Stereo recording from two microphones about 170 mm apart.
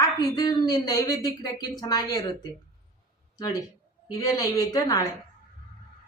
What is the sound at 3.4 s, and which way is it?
A woman's voice, 20° left (ahead or behind).